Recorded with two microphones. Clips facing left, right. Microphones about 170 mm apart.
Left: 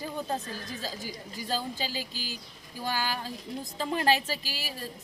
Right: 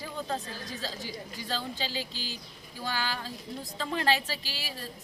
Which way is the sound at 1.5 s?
10° left (ahead or behind).